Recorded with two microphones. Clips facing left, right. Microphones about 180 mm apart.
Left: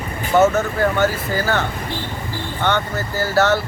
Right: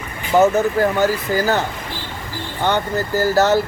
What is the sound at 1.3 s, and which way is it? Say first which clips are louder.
Speech: right 2 dB; 40° right (ahead or behind).